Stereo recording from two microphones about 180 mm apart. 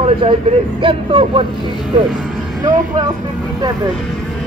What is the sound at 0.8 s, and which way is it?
Speech, 30° right (ahead or behind).